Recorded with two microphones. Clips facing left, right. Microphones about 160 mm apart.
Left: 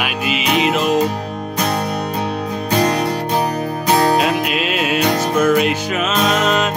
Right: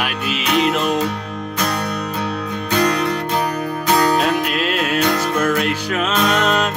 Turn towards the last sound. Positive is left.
turn(degrees=5)  # may be behind; listen again after turning